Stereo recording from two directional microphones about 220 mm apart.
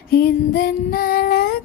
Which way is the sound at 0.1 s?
45° left (ahead or behind).